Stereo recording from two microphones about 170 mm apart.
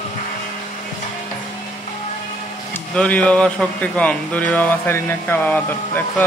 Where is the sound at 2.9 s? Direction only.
5° left (ahead or behind).